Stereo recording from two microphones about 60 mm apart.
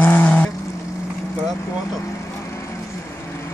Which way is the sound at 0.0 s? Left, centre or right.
Left.